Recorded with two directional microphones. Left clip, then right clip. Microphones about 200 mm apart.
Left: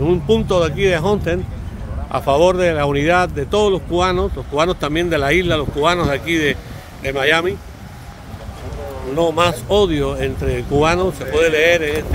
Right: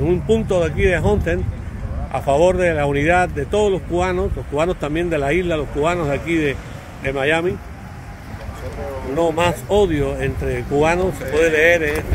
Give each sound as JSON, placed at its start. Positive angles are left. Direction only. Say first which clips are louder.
{"t": 0.0, "sound": "speech", "louder": "left 2 dB", "side_deg": 15}
{"t": 9.2, "sound": "speech", "louder": "left 2 dB", "side_deg": 15}